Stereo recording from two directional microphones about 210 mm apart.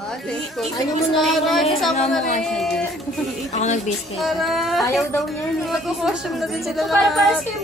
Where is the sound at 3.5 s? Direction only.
35° left (ahead or behind).